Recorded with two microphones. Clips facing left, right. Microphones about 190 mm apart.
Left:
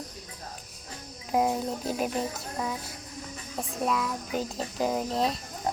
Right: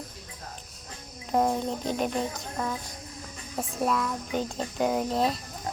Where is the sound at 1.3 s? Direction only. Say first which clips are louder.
Right 1 dB; 5° left (ahead or behind).